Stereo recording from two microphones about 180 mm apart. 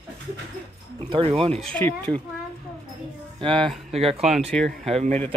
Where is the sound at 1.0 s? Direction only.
30° right (ahead or behind).